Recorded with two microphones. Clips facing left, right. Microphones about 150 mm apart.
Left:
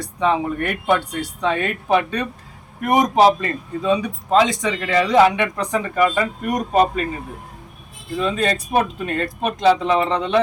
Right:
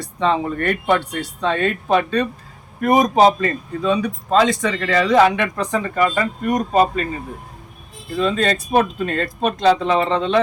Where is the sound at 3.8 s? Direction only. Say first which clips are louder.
Even; 20° left (ahead or behind).